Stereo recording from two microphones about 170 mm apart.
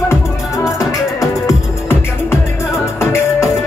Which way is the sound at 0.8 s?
20° left (ahead or behind).